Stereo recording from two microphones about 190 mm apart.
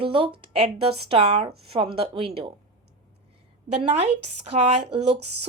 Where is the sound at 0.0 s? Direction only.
30° right (ahead or behind).